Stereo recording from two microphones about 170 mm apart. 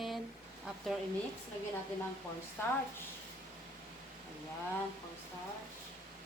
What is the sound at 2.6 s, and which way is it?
Speech, 15° left (ahead or behind).